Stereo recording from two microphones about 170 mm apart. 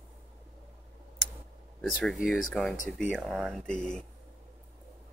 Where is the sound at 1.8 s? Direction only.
Centre (ahead or behind).